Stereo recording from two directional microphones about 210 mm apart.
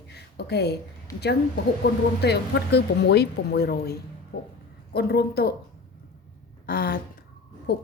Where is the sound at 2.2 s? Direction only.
50° left (ahead or behind).